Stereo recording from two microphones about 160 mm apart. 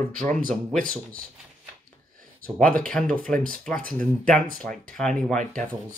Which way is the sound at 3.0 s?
10° left (ahead or behind).